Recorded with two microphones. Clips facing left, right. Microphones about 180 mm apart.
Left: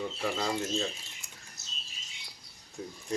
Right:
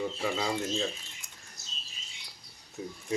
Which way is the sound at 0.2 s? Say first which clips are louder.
Left 2 dB; centre (ahead or behind).